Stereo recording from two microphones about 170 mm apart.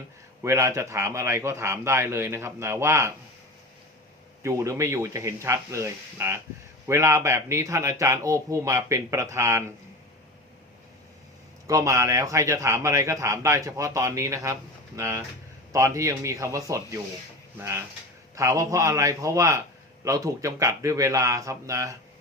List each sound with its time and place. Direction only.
0.4 s speech: 15° right (ahead or behind)
4.4 s speech: 15° right (ahead or behind)
11.7 s speech: 20° right (ahead or behind)